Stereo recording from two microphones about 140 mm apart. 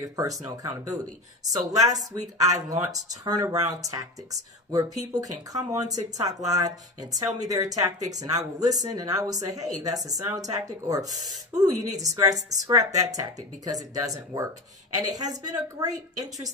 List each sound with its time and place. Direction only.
0.0 s speech: 25° right (ahead or behind)